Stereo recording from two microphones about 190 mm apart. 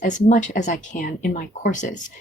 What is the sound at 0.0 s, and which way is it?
Speech, 40° left (ahead or behind).